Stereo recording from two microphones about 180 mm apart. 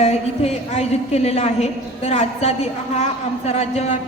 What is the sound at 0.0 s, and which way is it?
A woman's voice, 35° left (ahead or behind).